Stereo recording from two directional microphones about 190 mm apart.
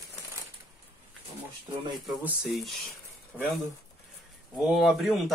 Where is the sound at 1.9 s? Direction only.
Centre (ahead or behind).